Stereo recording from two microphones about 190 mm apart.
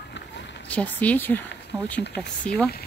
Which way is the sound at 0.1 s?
70° left (ahead or behind).